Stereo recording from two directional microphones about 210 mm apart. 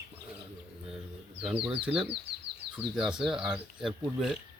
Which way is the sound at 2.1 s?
55° right (ahead or behind).